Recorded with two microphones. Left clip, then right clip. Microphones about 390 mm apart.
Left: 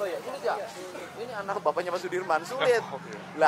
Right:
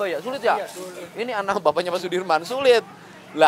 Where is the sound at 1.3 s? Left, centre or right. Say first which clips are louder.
Right 8 dB; right.